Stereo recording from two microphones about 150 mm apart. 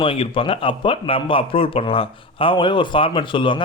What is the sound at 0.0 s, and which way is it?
A man's voice, 35° left (ahead or behind).